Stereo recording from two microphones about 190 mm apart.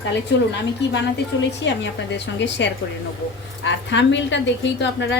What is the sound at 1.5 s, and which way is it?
A woman's voice, 65° left (ahead or behind).